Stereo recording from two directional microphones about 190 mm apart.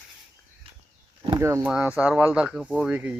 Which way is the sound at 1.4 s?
15° right (ahead or behind).